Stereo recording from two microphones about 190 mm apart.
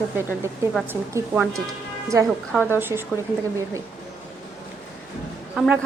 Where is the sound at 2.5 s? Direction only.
10° left (ahead or behind).